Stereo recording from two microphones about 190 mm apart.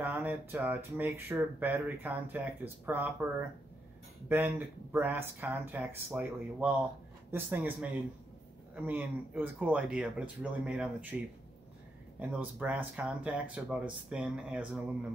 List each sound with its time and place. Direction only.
0.0 s speech: 10° right (ahead or behind)
12.2 s speech: 10° right (ahead or behind)